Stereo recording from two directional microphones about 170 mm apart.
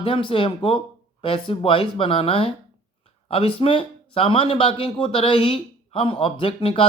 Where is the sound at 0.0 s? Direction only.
30° left (ahead or behind).